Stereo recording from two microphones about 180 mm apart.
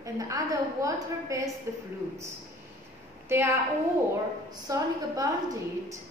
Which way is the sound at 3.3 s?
15° right (ahead or behind).